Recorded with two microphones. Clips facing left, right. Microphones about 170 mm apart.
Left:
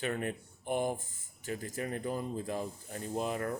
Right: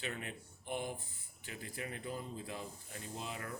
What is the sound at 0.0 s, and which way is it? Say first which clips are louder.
Speech: left 9 dB; 50° left (ahead or behind).